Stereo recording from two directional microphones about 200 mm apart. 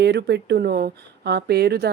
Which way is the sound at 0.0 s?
55° right (ahead or behind).